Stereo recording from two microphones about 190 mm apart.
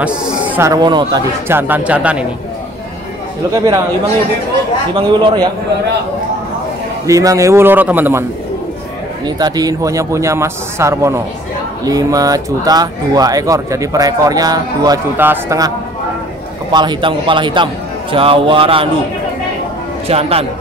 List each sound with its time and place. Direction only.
0.0 s speech: 5° right (ahead or behind)
0.7 s speech: 20° right (ahead or behind)
1.5 s speech: 10° right (ahead or behind)
3.5 s speech: 20° right (ahead or behind)
4.9 s speech: 25° right (ahead or behind)
7.1 s speech: 15° right (ahead or behind)
16.7 s speech: 25° right (ahead or behind)
20.1 s a man's voice: 30° right (ahead or behind)